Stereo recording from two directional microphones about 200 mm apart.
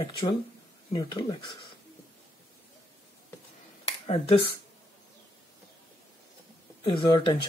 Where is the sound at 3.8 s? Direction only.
30° left (ahead or behind).